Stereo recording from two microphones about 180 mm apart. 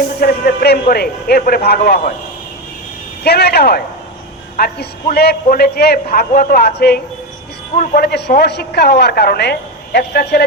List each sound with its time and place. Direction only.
0.2 s speech: 55° left (ahead or behind)
3.2 s speech: 65° left (ahead or behind)